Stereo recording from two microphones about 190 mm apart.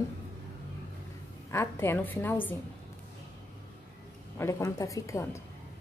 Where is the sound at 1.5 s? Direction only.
15° left (ahead or behind).